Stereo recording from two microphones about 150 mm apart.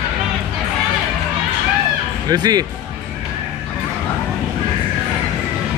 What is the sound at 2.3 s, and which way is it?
Speech, 25° right (ahead or behind).